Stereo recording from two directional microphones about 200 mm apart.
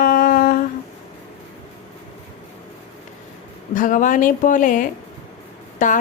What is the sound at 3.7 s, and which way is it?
A woman's voice, 40° left (ahead or behind).